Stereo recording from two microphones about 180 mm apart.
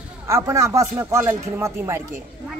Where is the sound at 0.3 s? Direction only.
15° right (ahead or behind).